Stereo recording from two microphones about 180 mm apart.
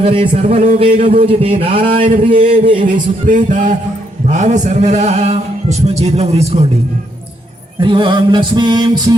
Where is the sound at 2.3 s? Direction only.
30° right (ahead or behind).